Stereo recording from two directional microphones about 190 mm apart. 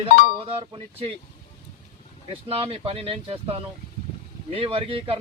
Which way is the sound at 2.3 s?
30° right (ahead or behind).